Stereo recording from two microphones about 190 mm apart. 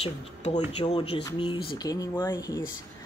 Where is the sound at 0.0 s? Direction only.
35° left (ahead or behind).